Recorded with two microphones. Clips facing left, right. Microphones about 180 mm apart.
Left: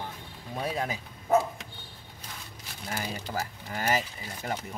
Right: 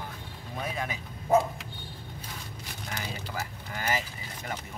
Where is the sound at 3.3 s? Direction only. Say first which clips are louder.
Left 3 dB; 40° left (ahead or behind).